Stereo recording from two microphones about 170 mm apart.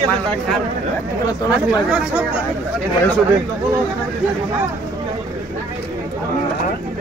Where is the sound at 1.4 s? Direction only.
5° right (ahead or behind).